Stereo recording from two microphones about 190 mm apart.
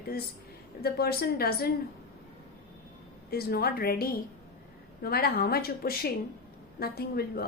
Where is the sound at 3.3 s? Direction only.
55° left (ahead or behind).